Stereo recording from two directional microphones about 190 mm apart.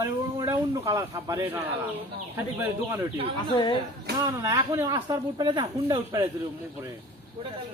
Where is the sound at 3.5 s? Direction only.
25° left (ahead or behind).